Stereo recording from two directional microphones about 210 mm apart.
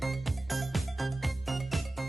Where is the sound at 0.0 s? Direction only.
Centre (ahead or behind).